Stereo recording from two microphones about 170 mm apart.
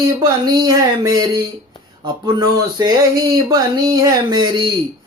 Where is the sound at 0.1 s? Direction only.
20° right (ahead or behind).